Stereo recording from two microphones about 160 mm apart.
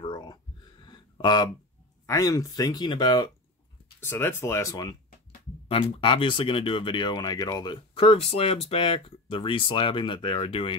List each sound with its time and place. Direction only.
0.0 s a sound: 25° left (ahead or behind)
2.0 s speech: 20° left (ahead or behind)
4.0 s speech: 15° left (ahead or behind)
5.7 s speech: 35° left (ahead or behind)